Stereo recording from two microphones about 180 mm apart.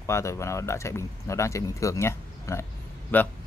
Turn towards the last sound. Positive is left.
turn(degrees=10)  # may be behind; listen again after turning